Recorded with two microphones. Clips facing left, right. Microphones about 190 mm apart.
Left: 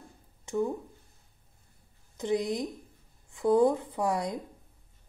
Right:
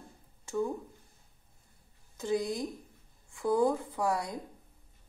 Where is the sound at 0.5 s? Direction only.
20° left (ahead or behind).